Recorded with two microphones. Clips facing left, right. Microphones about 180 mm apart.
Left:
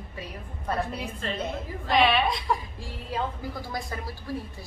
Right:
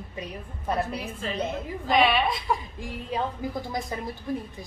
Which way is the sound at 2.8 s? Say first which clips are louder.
Right 2 dB; 20° right (ahead or behind).